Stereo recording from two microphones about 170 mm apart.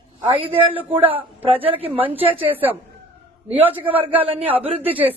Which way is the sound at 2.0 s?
35° right (ahead or behind).